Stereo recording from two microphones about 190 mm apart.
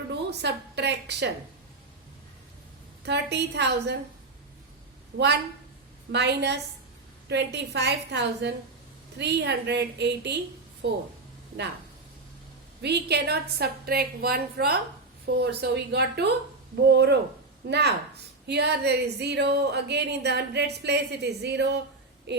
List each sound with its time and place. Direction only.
0.1 s a woman's voice: 60° right (ahead or behind)
3.1 s a woman's voice: 65° right (ahead or behind)
5.1 s a woman's voice: 60° right (ahead or behind)
12.8 s a woman's voice: 60° right (ahead or behind)